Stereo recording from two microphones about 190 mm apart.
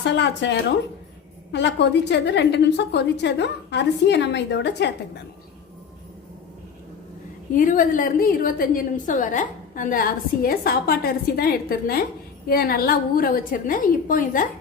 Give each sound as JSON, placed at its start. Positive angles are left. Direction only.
{"t": 0.0, "sound": "a woman's voice", "side_deg": 65}
{"t": 7.5, "sound": "a woman's voice", "side_deg": 45}